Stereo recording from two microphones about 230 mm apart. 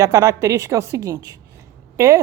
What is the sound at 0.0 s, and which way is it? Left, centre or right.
A woman's voice, centre.